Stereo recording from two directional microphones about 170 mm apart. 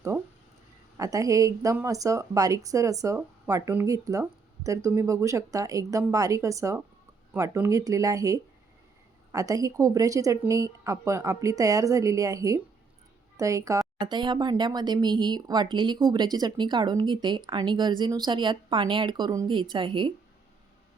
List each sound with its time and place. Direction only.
0.9 s a woman's voice: 20° right (ahead or behind)